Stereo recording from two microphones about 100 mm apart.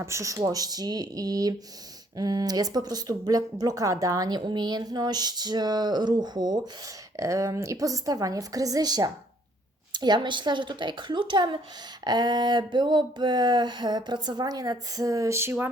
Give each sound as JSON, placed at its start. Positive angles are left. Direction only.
{"t": 0.0, "sound": "a woman's voice", "side_deg": -30}
{"t": 7.2, "sound": "a woman's voice", "side_deg": -30}